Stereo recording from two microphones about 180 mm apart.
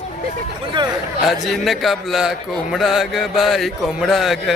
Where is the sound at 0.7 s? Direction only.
25° right (ahead or behind).